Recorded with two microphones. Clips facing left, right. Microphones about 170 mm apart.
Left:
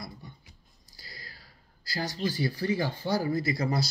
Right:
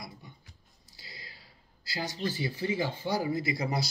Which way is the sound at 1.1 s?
25° right (ahead or behind).